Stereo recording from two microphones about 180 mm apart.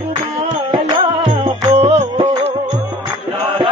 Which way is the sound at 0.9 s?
25° right (ahead or behind).